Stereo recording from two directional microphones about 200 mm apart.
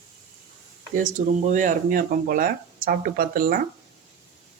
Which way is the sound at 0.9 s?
40° right (ahead or behind).